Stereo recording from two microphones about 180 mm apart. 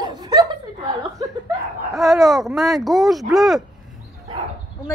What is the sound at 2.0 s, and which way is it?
Speech, centre (ahead or behind).